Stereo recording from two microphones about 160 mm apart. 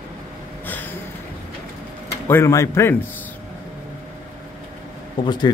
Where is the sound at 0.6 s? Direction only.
10° left (ahead or behind).